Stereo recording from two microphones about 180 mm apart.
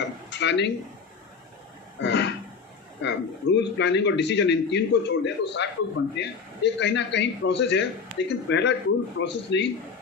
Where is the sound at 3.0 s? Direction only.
75° left (ahead or behind).